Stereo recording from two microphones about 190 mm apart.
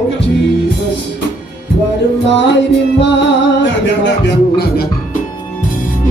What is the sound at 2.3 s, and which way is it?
Music, 70° left (ahead or behind).